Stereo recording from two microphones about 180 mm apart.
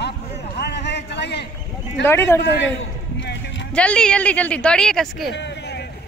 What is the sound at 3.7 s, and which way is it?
Speech, 5° left (ahead or behind).